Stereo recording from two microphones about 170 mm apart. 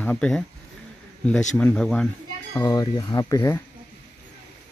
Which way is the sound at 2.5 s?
25° left (ahead or behind).